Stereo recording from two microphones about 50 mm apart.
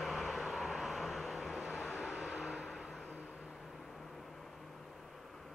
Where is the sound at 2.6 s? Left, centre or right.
Centre.